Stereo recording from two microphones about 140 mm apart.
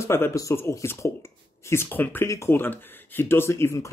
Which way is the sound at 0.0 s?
20° left (ahead or behind).